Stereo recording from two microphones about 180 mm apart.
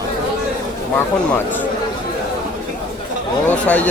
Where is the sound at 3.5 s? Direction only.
10° left (ahead or behind).